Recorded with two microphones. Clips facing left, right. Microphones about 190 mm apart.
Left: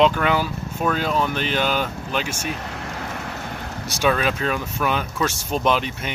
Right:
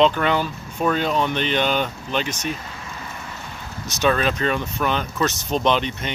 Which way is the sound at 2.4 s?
65° left (ahead or behind).